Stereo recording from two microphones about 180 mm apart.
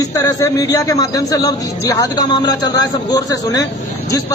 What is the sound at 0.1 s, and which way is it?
A man's voice, 20° left (ahead or behind).